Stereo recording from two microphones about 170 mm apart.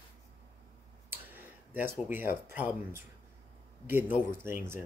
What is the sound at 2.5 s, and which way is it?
Speech, 10° right (ahead or behind).